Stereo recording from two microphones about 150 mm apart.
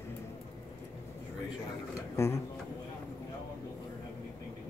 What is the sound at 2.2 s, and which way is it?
Speech, 20° left (ahead or behind).